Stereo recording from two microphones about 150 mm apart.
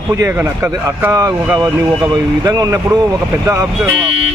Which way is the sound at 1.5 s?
25° right (ahead or behind).